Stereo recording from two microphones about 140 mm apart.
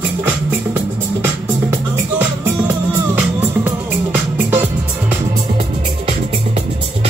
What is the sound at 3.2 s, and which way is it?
Music, 15° right (ahead or behind).